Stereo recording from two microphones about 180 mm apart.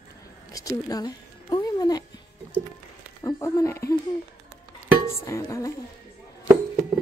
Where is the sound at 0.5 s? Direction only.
20° left (ahead or behind).